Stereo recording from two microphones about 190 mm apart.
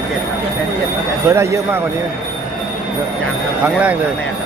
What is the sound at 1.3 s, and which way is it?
Speech, 15° right (ahead or behind).